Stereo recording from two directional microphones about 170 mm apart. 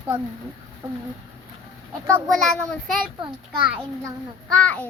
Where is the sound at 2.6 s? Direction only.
5° left (ahead or behind).